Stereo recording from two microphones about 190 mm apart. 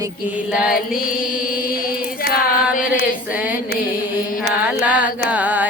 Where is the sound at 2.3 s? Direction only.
50° left (ahead or behind).